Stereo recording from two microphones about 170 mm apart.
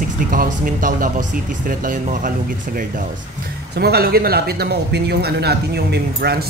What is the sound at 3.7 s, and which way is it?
Speech, 70° right (ahead or behind).